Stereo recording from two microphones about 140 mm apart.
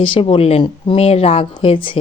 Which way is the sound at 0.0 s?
40° left (ahead or behind).